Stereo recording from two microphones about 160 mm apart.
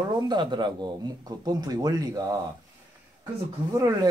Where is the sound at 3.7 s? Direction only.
20° right (ahead or behind).